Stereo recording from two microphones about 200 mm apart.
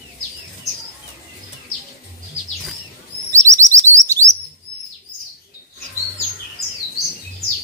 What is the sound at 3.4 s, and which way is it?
Chirp, 15° right (ahead or behind).